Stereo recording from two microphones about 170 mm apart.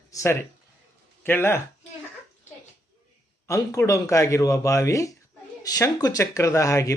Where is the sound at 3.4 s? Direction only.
15° left (ahead or behind).